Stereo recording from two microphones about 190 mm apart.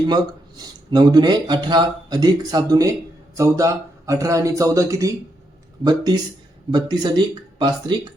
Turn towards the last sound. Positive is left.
turn(degrees=-25)  # may be behind; listen again after turning